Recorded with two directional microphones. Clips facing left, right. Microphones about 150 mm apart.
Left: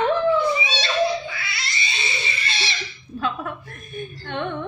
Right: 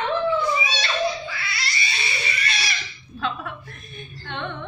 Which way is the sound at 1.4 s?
25° left (ahead or behind).